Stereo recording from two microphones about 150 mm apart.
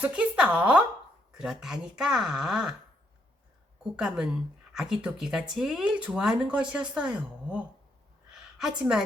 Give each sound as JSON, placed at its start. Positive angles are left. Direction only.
{"t": 0.0, "sound": "speech", "side_deg": -5}
{"t": 3.9, "sound": "speech", "side_deg": -5}
{"t": 8.3, "sound": "a sound", "side_deg": -5}